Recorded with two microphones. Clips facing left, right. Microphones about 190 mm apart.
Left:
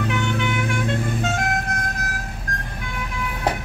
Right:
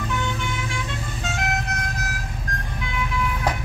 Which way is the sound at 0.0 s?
65° left (ahead or behind).